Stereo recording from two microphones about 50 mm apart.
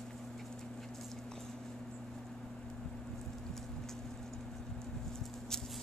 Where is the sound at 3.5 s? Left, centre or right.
Centre.